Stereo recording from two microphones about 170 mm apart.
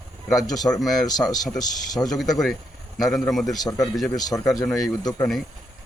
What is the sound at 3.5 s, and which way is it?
Speech, 20° left (ahead or behind).